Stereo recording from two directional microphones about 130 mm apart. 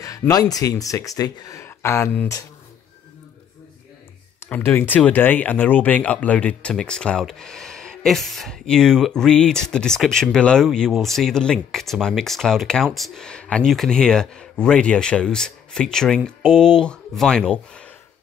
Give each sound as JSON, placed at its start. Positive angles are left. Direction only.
{"t": 0.3, "sound": "speech", "side_deg": 30}
{"t": 4.4, "sound": "speech", "side_deg": 15}